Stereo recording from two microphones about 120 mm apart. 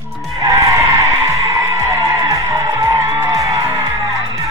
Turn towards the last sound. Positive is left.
turn(degrees=-25)  # may be behind; listen again after turning